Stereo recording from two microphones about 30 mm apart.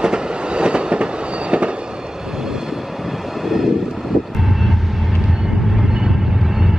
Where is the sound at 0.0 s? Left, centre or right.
Right.